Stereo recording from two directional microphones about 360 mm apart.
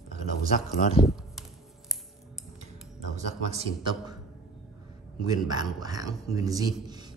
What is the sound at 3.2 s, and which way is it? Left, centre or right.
Speech, centre.